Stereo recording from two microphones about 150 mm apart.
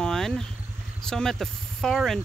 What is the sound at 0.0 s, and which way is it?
Vehicle, 5° left (ahead or behind).